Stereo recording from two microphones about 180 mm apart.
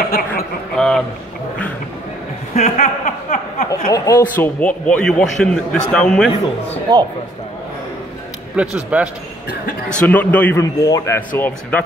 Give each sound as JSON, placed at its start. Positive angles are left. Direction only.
{"t": 0.7, "sound": "a man's voice", "side_deg": 5}
{"t": 2.5, "sound": "chuckle", "side_deg": 45}
{"t": 3.9, "sound": "a man's voice", "side_deg": 20}
{"t": 6.9, "sound": "speech", "side_deg": -20}
{"t": 8.5, "sound": "a man's voice", "side_deg": -5}
{"t": 9.8, "sound": "a man's voice", "side_deg": 5}